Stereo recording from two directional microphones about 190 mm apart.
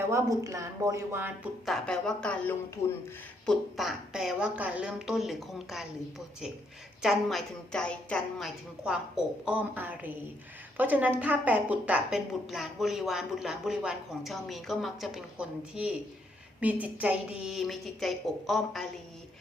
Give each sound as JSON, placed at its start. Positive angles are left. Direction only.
{"t": 0.1, "sound": "speech", "side_deg": -15}
{"t": 1.6, "sound": "a woman's voice", "side_deg": 0}